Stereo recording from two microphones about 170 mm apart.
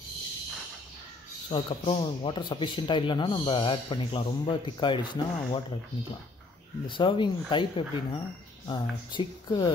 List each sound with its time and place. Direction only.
1.5 s speech: 30° left (ahead or behind)
6.9 s speech: 30° left (ahead or behind)